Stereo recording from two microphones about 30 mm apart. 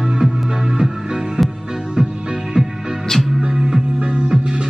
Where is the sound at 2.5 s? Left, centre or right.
Right.